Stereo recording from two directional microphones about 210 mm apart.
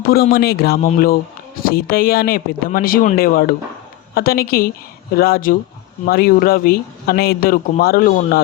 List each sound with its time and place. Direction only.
0.0 s speech: 45° left (ahead or behind)